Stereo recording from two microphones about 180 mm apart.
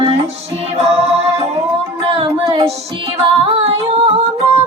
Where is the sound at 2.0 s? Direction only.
30° right (ahead or behind).